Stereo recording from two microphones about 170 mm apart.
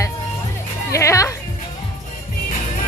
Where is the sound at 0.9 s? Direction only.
15° left (ahead or behind).